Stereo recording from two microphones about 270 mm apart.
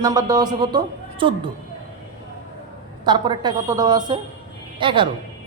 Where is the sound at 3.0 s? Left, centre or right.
Centre.